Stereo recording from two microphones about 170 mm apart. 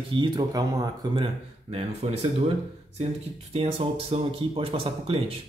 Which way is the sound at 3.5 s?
35° right (ahead or behind).